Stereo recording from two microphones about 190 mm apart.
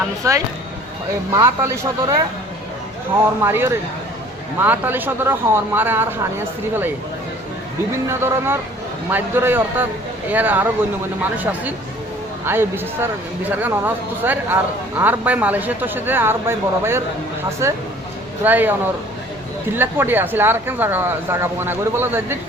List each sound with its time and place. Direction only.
0.2 s speech: 15° right (ahead or behind)
3.4 s speech: 10° right (ahead or behind)
8.0 s speech: 15° right (ahead or behind)
19.7 s speech: 10° right (ahead or behind)